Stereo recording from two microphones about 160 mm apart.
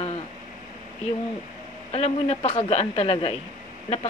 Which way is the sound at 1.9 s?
40° left (ahead or behind).